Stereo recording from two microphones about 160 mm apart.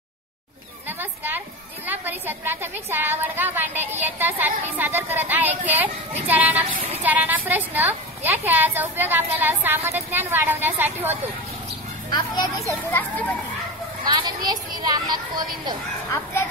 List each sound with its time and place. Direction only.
0.8 s a sound: 10° right (ahead or behind)
1.9 s a woman's voice: 10° right (ahead or behind)
12.1 s speech: 25° left (ahead or behind)
12.9 s speech: 10° left (ahead or behind)
14.0 s a child's voice: 30° right (ahead or behind)